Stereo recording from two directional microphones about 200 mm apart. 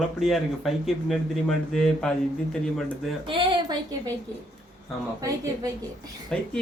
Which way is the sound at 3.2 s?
25° right (ahead or behind).